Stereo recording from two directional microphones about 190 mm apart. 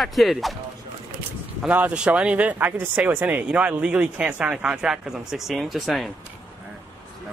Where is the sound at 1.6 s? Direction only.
5° right (ahead or behind).